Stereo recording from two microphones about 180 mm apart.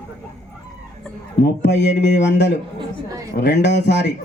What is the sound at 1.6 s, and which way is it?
Speech, 75° left (ahead or behind).